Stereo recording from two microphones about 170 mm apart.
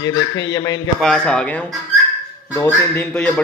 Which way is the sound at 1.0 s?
5° left (ahead or behind).